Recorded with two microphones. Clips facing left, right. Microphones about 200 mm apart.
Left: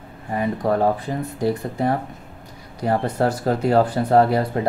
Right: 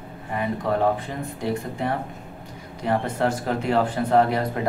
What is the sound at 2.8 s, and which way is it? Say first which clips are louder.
Speech: left 3 dB; 40° left (ahead or behind).